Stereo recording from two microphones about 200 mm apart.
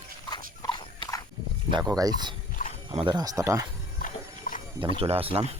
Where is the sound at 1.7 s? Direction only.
20° right (ahead or behind).